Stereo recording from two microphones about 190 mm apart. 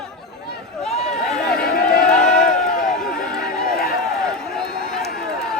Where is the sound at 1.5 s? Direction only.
55° left (ahead or behind).